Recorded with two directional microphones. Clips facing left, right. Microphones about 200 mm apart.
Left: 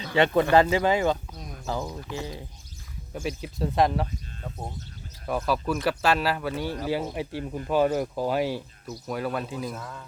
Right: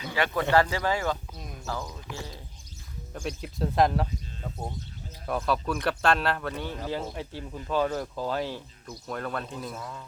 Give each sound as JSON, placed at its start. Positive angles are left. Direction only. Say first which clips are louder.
{"t": 0.1, "sound": "speech", "louder": "left 5 dB", "side_deg": 25}
{"t": 3.2, "sound": "speech", "louder": "left 2 dB", "side_deg": 5}
{"t": 5.2, "sound": "speech", "louder": "left 1 dB", "side_deg": 5}